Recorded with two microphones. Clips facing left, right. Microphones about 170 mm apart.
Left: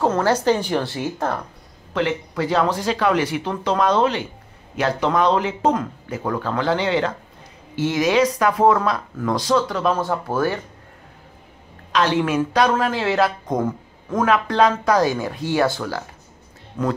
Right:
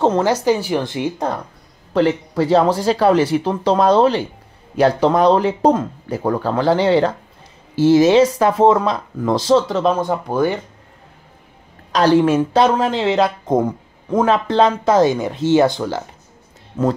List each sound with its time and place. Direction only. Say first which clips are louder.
0.0 s speech: right 4 dB; 25° right (ahead or behind)
0.3 s speech: right 2 dB; 10° right (ahead or behind)
2.0 s speech: right 6 dB; 30° right (ahead or behind)
11.9 s speech: right 6 dB; 35° right (ahead or behind)